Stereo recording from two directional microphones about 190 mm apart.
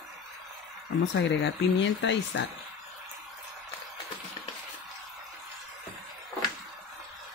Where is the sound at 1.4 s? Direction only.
70° left (ahead or behind).